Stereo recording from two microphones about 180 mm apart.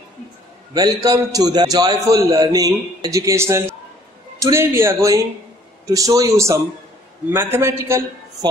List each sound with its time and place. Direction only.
0.7 s a man's voice: 20° right (ahead or behind)